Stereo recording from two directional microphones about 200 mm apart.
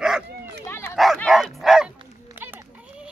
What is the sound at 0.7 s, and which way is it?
Dog, 10° left (ahead or behind).